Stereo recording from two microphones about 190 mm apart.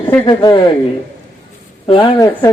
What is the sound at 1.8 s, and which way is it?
Speech, 25° left (ahead or behind).